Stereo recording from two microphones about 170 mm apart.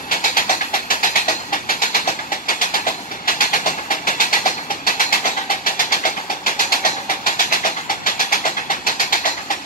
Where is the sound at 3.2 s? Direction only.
55° left (ahead or behind).